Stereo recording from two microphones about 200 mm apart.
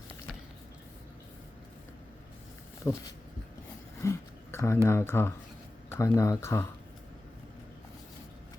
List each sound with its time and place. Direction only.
2.8 s speech: 15° left (ahead or behind)
4.0 s a sound: 15° left (ahead or behind)
4.9 s speech: 10° left (ahead or behind)